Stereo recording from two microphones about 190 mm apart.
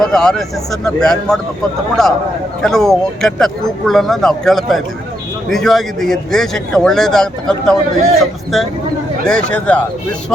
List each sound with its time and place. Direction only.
0.0 s speech: 5° left (ahead or behind)